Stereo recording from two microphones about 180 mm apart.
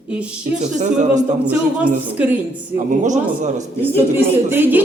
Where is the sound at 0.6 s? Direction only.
40° right (ahead or behind).